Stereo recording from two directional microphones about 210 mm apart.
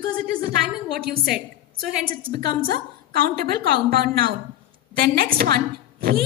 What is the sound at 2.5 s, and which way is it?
A woman's voice, 45° right (ahead or behind).